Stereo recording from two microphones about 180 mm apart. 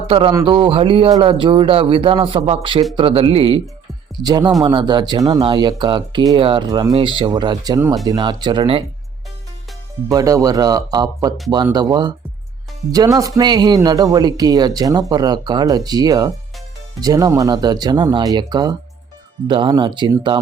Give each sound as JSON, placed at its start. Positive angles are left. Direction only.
{"t": 0.1, "sound": "speech", "side_deg": -30}
{"t": 10.1, "sound": "speech", "side_deg": -20}